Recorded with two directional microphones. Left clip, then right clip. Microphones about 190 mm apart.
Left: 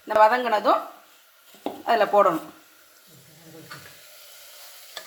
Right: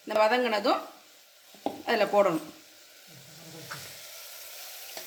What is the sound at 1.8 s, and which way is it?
Speech, 35° right (ahead or behind).